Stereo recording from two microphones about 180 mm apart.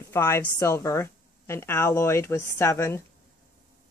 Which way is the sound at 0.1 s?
15° left (ahead or behind).